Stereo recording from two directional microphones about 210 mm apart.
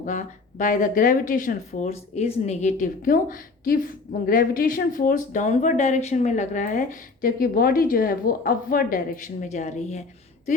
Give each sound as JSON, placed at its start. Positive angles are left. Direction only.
{"t": 0.0, "sound": "a woman's voice", "side_deg": 35}